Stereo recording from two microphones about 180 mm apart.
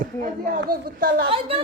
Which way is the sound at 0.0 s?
50° right (ahead or behind).